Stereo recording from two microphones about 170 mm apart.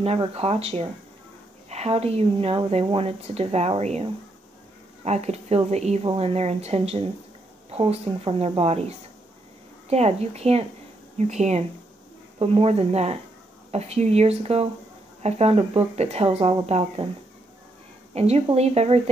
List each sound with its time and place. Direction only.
0.0 s speech: 35° right (ahead or behind)
18.1 s speech: 35° right (ahead or behind)